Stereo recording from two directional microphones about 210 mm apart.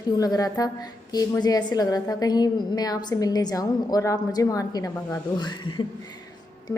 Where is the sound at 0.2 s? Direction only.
15° left (ahead or behind).